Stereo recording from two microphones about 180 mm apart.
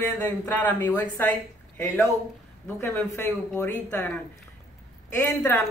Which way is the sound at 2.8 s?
15° left (ahead or behind).